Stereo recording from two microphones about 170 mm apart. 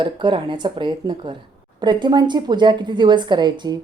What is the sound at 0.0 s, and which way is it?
Speech, 25° right (ahead or behind).